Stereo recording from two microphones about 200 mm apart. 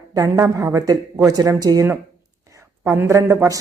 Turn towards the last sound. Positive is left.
turn(degrees=-15)  # may be behind; listen again after turning